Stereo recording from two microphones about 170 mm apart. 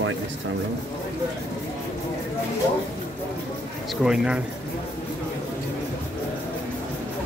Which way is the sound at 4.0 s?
5° right (ahead or behind).